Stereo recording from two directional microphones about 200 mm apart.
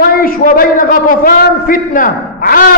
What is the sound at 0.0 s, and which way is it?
A man's voice, 45° left (ahead or behind).